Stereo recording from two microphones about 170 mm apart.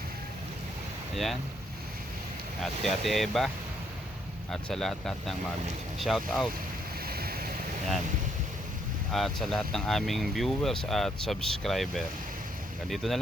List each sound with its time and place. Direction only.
1.1 s speech: centre (ahead or behind)
2.8 s speech: centre (ahead or behind)
4.7 s speech: 5° left (ahead or behind)
7.0 s waves: 65° right (ahead or behind)
9.1 s speech: centre (ahead or behind)